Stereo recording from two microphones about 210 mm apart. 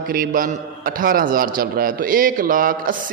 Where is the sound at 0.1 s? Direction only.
45° right (ahead or behind).